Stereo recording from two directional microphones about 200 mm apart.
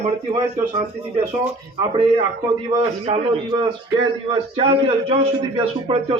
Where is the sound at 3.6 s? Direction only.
25° right (ahead or behind).